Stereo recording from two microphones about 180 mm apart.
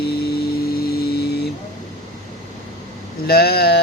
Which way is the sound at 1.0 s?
65° left (ahead or behind).